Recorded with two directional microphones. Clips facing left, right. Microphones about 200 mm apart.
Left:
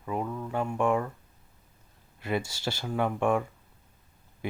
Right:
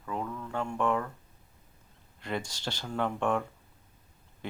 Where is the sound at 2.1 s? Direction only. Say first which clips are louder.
Left 4 dB; 10° left (ahead or behind).